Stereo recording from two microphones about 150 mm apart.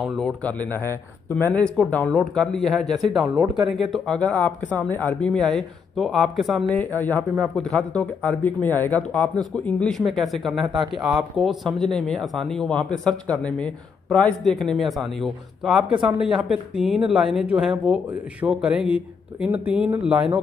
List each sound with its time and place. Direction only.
0.0 s speech: centre (ahead or behind)
6.7 s speech: 10° left (ahead or behind)
7.3 s speech: centre (ahead or behind)
15.9 s speech: 30° right (ahead or behind)
16.2 s speech: 5° right (ahead or behind)